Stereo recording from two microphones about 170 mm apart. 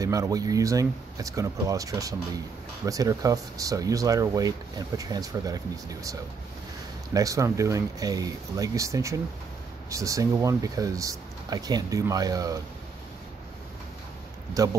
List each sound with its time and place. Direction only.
0.0 s speech: 20° right (ahead or behind)
7.2 s speech: 20° right (ahead or behind)
14.5 s speech: 20° right (ahead or behind)